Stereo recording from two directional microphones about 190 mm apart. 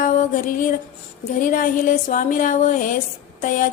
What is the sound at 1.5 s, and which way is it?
A woman's voice, 45° left (ahead or behind).